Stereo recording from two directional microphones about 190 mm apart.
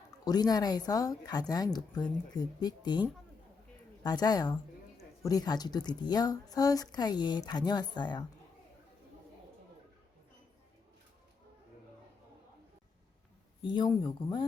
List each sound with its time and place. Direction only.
0.3 s speech: 20° left (ahead or behind)
4.0 s speech: 20° left (ahead or behind)
13.6 s speech: 25° left (ahead or behind)